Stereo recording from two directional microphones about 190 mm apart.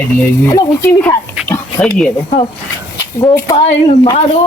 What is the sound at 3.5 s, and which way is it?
Speech, 30° left (ahead or behind).